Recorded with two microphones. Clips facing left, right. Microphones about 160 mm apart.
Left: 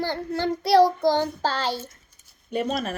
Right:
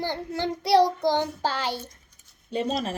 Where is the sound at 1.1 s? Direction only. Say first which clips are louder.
Left 2 dB; 15° right (ahead or behind).